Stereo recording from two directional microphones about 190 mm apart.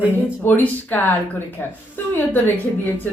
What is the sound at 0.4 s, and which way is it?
Speech, 10° left (ahead or behind).